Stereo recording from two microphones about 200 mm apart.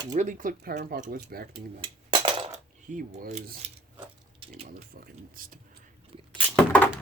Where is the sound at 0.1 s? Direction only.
40° right (ahead or behind).